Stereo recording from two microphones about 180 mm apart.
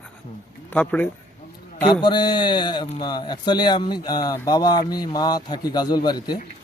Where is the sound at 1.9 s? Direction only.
25° left (ahead or behind).